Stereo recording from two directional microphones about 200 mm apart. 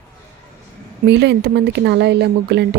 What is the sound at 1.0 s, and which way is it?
Speech, 60° right (ahead or behind).